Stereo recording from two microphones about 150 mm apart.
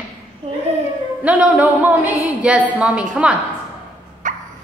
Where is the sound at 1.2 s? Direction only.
10° right (ahead or behind).